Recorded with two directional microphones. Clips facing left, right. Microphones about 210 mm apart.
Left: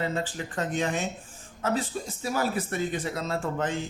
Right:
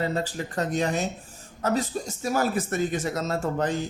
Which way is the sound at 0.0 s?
40° right (ahead or behind).